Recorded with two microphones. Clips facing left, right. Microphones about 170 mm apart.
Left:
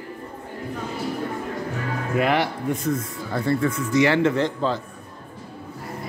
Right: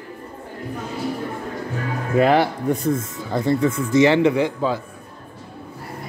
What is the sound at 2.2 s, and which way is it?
Speech, 35° right (ahead or behind).